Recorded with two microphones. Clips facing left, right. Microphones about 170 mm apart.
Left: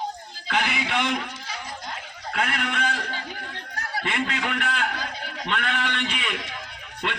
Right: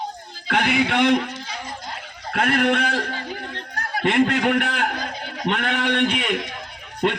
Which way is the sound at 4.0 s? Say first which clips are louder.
Right 10 dB; 55° right (ahead or behind).